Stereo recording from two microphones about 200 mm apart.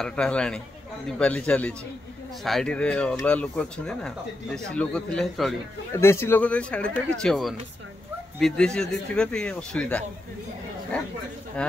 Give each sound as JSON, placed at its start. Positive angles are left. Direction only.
{"t": 0.0, "sound": "speech", "side_deg": 5}